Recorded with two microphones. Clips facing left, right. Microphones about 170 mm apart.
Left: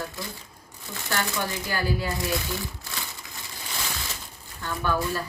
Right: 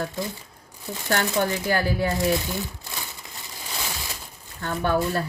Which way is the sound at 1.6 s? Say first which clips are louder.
Right 5 dB; 55° right (ahead or behind).